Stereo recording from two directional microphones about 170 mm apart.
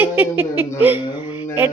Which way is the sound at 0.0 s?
10° right (ahead or behind).